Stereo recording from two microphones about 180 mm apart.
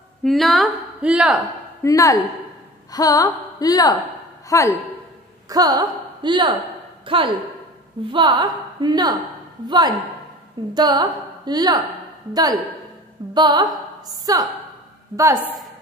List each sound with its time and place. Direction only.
0.2 s a woman's voice: centre (ahead or behind)
1.8 s a woman's voice: 20° left (ahead or behind)
5.5 s a woman's voice: 20° right (ahead or behind)
13.3 s a woman's voice: 25° right (ahead or behind)